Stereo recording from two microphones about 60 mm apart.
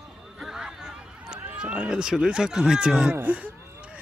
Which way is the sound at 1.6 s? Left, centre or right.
Centre.